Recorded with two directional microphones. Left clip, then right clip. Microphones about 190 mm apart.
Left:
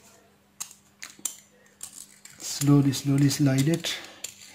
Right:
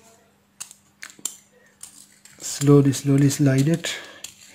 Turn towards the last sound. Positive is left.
turn(degrees=-35)  # may be behind; listen again after turning